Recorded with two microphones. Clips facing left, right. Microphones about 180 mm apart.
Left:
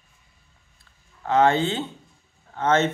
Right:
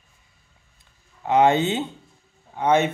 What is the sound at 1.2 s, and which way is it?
Speech, 15° right (ahead or behind).